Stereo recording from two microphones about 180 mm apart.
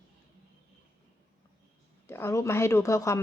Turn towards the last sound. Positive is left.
turn(degrees=15)  # may be behind; listen again after turning